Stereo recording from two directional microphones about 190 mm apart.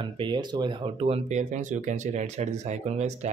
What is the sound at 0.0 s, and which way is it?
Speech, 25° right (ahead or behind).